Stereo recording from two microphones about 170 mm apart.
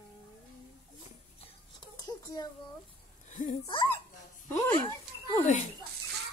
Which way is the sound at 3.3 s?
50° left (ahead or behind).